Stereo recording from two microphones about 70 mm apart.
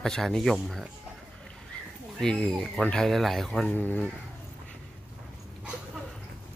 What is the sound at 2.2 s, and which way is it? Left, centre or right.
Speech, centre.